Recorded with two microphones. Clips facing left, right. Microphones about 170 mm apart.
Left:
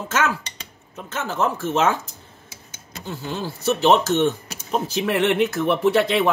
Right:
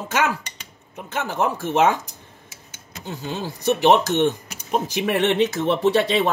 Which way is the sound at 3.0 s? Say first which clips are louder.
Even; 20° right (ahead or behind).